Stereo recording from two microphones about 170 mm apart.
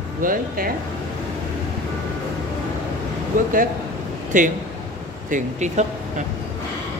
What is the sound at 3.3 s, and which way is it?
Speech, 50° right (ahead or behind).